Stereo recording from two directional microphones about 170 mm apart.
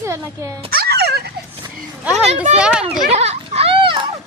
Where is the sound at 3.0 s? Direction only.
40° right (ahead or behind).